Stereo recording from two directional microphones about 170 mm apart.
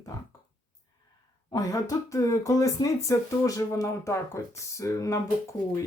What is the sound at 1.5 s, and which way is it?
Speech, 20° left (ahead or behind).